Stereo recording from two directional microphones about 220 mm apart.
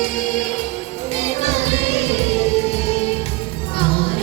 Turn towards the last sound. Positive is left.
turn(degrees=25)  # may be behind; listen again after turning